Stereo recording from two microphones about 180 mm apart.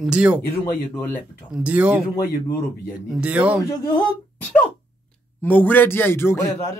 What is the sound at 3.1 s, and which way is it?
Speech, 5° right (ahead or behind).